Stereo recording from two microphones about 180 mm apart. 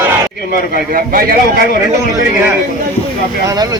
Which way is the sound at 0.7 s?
55° right (ahead or behind).